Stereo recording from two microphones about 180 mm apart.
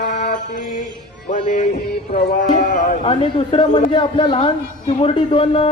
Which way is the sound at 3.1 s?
30° left (ahead or behind).